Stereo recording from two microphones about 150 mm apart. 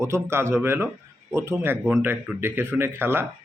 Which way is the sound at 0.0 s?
15° right (ahead or behind).